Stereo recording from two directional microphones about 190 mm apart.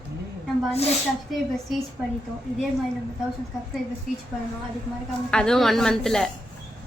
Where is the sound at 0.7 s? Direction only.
35° left (ahead or behind).